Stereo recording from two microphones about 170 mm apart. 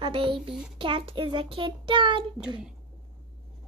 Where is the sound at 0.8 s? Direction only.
30° right (ahead or behind).